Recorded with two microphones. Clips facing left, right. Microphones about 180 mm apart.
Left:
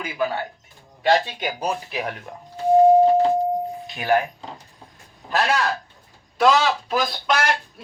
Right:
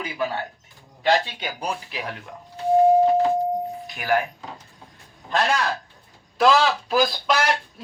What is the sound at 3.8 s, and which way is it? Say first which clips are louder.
Speech: left 3 dB; 20° left (ahead or behind).